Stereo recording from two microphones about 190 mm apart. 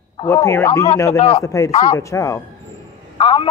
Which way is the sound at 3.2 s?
30° left (ahead or behind).